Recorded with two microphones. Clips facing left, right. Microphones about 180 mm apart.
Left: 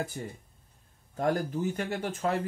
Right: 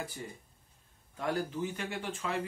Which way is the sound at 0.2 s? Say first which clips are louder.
Left 5 dB; 50° left (ahead or behind).